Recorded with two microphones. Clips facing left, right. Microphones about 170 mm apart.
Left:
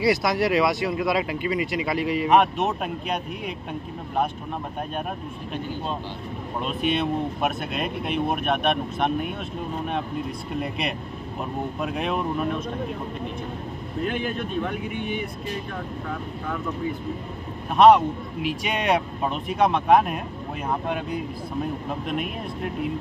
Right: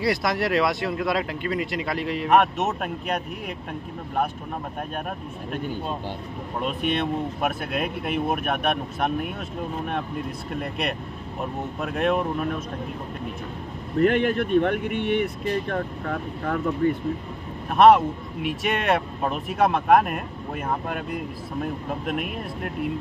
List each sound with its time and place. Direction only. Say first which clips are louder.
0.0 s speech: left 2 dB; centre (ahead or behind)
6.6 s speech: even; centre (ahead or behind)
10.6 s speech: right 1 dB; centre (ahead or behind)
13.9 s speech: right 7 dB; 70° right (ahead or behind)
17.7 s speech: even; 5° right (ahead or behind)
22.0 s speech: even; 5° right (ahead or behind)